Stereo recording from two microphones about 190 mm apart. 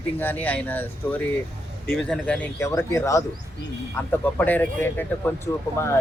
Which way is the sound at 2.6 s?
15° left (ahead or behind).